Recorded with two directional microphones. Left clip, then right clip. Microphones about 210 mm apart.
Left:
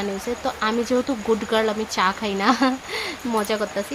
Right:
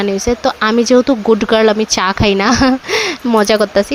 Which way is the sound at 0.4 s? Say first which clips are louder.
Right 9 dB; 40° right (ahead or behind).